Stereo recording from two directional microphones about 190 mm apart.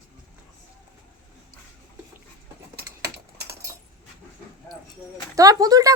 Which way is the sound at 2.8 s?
55° right (ahead or behind).